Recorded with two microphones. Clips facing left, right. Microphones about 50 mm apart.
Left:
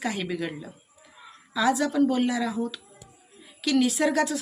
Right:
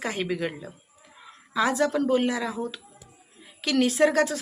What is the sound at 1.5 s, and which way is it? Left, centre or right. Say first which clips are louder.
Speech: even; right.